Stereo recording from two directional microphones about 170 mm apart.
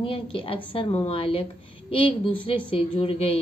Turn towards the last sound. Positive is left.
turn(degrees=35)  # may be behind; listen again after turning